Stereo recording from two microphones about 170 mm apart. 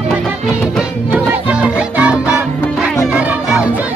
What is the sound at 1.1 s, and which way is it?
Music, 5° right (ahead or behind).